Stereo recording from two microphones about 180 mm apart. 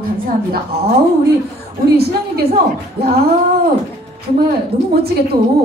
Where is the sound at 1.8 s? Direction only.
60° right (ahead or behind).